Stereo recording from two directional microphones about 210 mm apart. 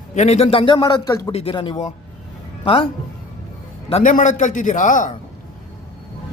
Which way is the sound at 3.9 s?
35° left (ahead or behind).